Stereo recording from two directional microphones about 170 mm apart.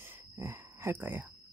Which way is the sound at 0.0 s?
15° right (ahead or behind).